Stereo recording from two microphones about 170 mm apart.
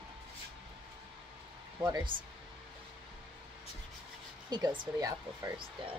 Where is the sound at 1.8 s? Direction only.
20° right (ahead or behind).